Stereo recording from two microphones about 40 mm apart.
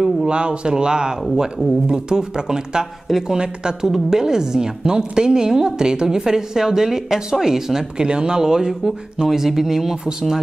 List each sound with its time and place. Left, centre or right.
0.0 s speech: right
1.3 s speech: centre
1.9 s a woman's voice: centre